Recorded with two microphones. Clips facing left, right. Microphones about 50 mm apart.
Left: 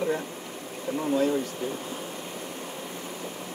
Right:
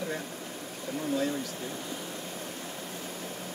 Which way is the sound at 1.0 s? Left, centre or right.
Left.